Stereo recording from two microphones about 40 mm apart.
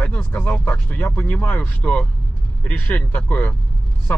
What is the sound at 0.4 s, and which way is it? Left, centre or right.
Speech, left.